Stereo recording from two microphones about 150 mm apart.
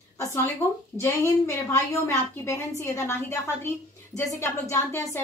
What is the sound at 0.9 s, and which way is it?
A woman's voice, 15° left (ahead or behind).